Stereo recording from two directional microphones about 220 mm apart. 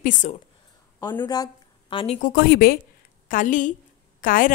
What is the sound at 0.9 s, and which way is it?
A woman's voice, 15° left (ahead or behind).